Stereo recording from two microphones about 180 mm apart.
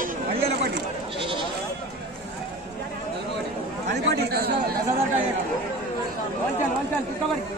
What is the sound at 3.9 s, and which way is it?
Speech, 65° right (ahead or behind).